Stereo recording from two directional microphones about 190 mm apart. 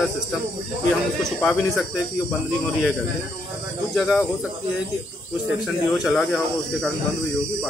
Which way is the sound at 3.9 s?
10° left (ahead or behind).